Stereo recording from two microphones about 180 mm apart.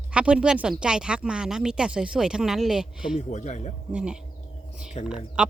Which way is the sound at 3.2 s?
40° left (ahead or behind).